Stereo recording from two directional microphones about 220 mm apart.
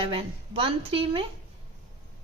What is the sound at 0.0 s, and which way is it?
A woman's voice, 25° right (ahead or behind).